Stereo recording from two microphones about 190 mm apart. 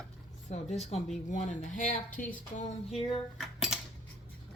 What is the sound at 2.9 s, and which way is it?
Speech, 30° left (ahead or behind).